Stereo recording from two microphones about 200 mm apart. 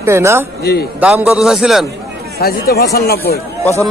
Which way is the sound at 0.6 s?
50° left (ahead or behind).